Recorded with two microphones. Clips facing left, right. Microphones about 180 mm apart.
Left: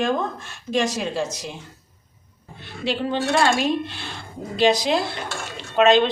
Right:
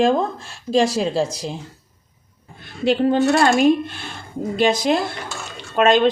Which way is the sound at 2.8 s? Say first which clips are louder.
Right 7 dB; 50° right (ahead or behind).